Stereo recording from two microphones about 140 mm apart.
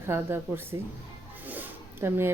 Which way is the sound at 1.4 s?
15° right (ahead or behind).